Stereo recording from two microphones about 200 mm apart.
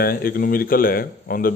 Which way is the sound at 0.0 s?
45° left (ahead or behind).